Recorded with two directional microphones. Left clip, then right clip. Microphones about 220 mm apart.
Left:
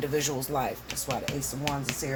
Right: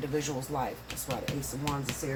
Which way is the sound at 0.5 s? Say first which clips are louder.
Left 3 dB; 55° left (ahead or behind).